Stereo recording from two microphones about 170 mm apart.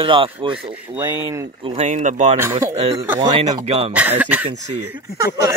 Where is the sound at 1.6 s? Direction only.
40° right (ahead or behind).